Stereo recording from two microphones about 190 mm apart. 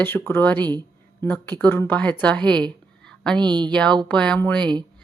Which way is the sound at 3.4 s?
25° right (ahead or behind).